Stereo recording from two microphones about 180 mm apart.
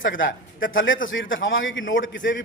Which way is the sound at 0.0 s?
90° left.